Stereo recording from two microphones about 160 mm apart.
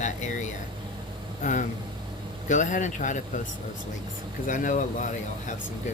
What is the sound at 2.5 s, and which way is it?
Speech, 50° left (ahead or behind).